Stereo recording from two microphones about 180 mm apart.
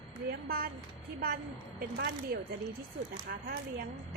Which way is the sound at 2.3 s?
55° right (ahead or behind).